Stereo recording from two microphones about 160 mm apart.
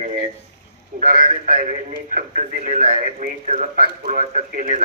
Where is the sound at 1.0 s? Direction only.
60° right (ahead or behind).